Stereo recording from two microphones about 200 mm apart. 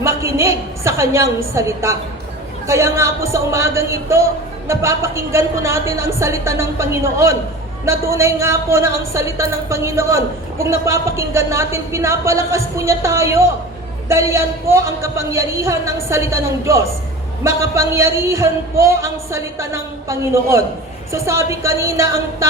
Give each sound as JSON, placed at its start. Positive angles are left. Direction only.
{"t": 0.0, "sound": "a woman's voice", "side_deg": -15}